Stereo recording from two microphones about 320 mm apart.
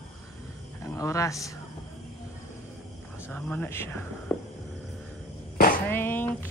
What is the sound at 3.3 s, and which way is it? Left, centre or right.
Speech, centre.